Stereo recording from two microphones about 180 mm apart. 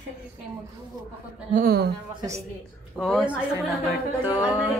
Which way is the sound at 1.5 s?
55° right (ahead or behind).